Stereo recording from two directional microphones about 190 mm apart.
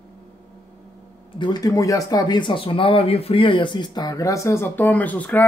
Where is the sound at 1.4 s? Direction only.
20° left (ahead or behind).